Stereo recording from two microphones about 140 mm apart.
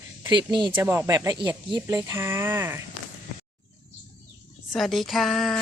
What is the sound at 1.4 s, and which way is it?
Speech, 35° right (ahead or behind).